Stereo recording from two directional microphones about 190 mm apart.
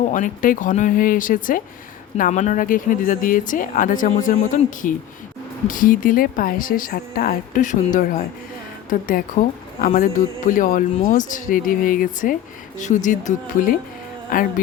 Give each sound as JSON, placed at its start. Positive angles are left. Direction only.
{"t": 0.0, "sound": "speech", "side_deg": 40}